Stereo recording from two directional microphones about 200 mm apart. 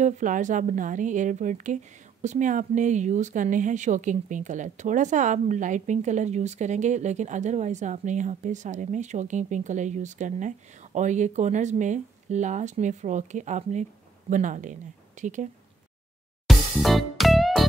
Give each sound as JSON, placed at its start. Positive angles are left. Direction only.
{"t": 0.0, "sound": "a woman's voice", "side_deg": -40}
{"t": 16.4, "sound": "music", "side_deg": 0}